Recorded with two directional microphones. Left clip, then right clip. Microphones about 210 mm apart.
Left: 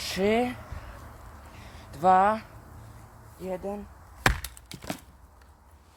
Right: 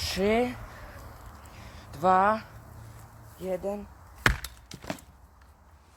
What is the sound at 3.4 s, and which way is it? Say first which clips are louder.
Speech: right 2 dB; 40° right (ahead or behind).